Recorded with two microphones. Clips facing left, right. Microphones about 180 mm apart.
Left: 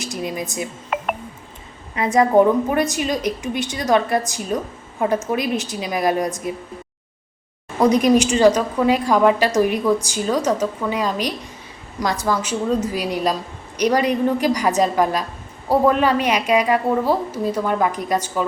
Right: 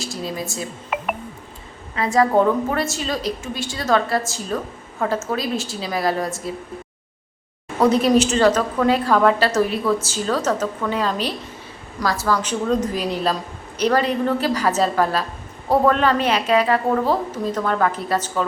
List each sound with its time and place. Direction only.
0.0 s speech: 20° left (ahead or behind)
0.9 s telephone dialing: 5° right (ahead or behind)
2.1 s a woman's voice: 15° left (ahead or behind)
7.8 s a woman's voice: 15° left (ahead or behind)